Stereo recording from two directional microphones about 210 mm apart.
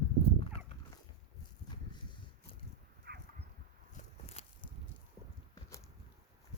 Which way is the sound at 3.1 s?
50° right (ahead or behind).